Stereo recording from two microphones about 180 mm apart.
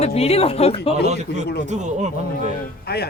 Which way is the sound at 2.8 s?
60° left (ahead or behind).